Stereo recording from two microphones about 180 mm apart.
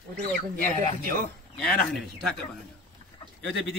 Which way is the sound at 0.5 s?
55° right (ahead or behind).